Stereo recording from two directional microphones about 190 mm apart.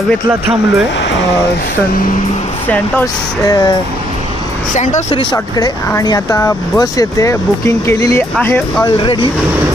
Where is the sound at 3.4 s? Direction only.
20° left (ahead or behind).